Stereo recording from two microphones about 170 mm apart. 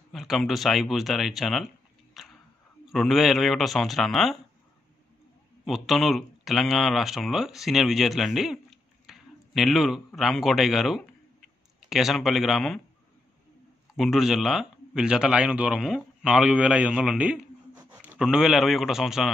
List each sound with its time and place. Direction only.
0.1 s speech: centre (ahead or behind)
2.2 s a sound: centre (ahead or behind)
2.9 s speech: centre (ahead or behind)
5.7 s speech: centre (ahead or behind)
13.9 s speech: centre (ahead or behind)